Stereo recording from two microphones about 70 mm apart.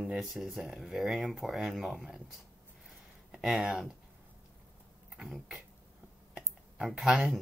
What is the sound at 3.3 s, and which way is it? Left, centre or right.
Speech, centre.